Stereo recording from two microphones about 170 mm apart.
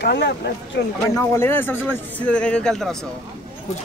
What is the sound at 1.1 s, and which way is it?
Speech, 15° left (ahead or behind).